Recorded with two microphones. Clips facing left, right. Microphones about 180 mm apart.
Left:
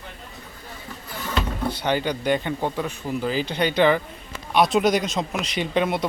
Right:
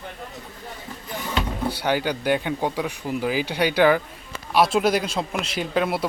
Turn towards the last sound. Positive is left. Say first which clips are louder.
# left 1 dB
turn(degrees=-5)  # may be behind; listen again after turning